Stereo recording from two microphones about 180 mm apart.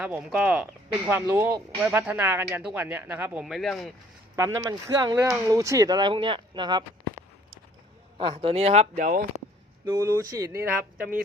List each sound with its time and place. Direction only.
0.0 s speech: 5° right (ahead or behind)
4.4 s speech: 20° right (ahead or behind); by 9.2 s 45° right (ahead or behind)
9.8 s speech: 15° right (ahead or behind)